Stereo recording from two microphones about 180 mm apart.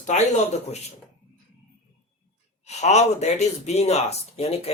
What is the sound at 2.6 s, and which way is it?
Speech, 40° left (ahead or behind).